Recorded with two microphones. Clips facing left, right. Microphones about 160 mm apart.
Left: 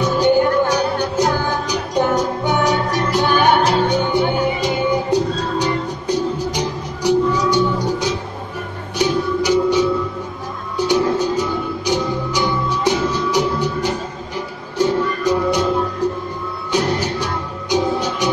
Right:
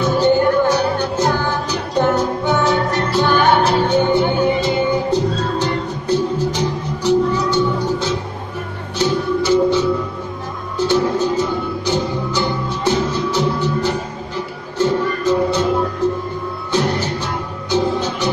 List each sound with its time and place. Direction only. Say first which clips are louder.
0.2 s music: even; 15° left (ahead or behind)
14.8 s music: even; 15° left (ahead or behind)